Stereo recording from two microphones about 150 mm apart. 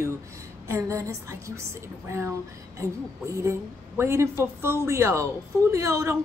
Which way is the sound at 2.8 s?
20° right (ahead or behind).